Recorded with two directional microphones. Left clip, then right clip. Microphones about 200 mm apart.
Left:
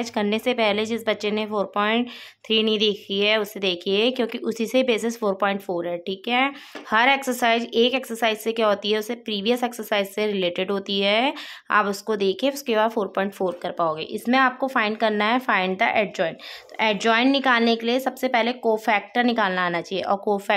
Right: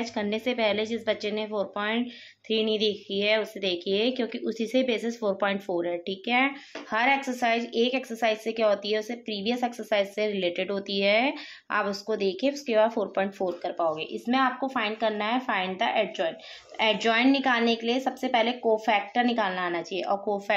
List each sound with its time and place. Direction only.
0.0 s speech: 30° left (ahead or behind)
6.9 s a woman's voice: 45° left (ahead or behind)